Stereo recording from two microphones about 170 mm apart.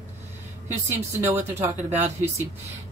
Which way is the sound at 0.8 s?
15° right (ahead or behind).